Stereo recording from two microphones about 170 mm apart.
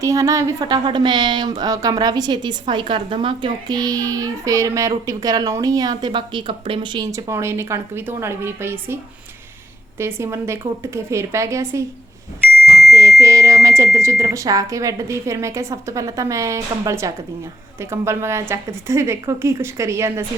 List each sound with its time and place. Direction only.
0.0 s a woman's voice: 20° right (ahead or behind)
10.0 s a woman's voice: 15° right (ahead or behind)
12.9 s a woman's voice: 20° right (ahead or behind)